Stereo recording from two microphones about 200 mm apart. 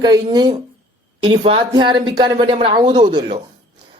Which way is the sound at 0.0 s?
20° right (ahead or behind).